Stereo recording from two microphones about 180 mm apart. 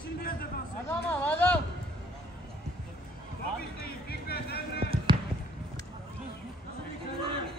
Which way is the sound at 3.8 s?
60° left (ahead or behind).